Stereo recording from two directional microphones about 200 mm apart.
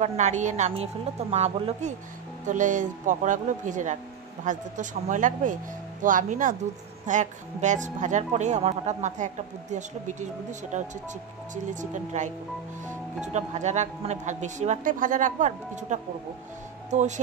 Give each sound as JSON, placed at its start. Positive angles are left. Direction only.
{"t": 0.0, "sound": "speech", "side_deg": -35}